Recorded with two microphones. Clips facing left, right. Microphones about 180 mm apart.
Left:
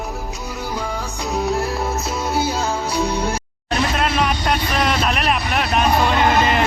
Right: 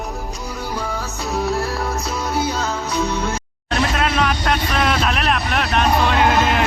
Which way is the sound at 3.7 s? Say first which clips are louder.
Even; centre (ahead or behind).